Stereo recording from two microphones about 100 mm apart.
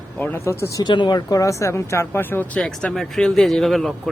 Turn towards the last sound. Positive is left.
turn(degrees=0)  # may be behind; listen again after turning